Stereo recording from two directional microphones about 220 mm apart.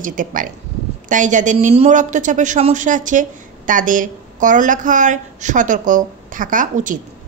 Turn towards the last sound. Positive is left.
turn(degrees=-35)  # may be behind; listen again after turning